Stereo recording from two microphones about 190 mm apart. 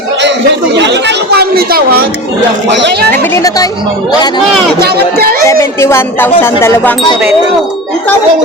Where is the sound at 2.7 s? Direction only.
65° right (ahead or behind).